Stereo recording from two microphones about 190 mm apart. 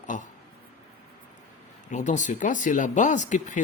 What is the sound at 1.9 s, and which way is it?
Speech, 40° left (ahead or behind).